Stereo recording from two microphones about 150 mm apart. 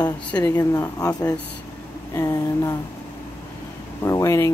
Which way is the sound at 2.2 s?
20° left (ahead or behind).